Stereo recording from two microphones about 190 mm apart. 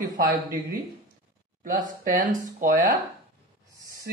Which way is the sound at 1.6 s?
45° right (ahead or behind).